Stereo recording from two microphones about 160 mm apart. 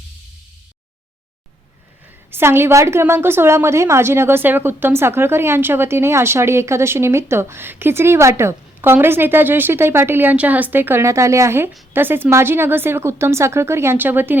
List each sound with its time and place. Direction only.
2.3 s a woman's voice: 15° right (ahead or behind)